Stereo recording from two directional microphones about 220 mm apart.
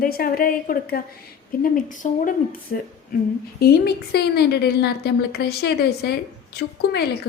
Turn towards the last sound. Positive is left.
turn(degrees=45)  # may be behind; listen again after turning